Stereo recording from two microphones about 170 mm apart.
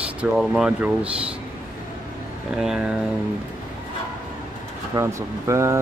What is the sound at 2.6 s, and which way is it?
Speech, 5° right (ahead or behind).